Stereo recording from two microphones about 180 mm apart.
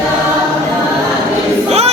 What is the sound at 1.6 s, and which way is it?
Crowd, 35° right (ahead or behind).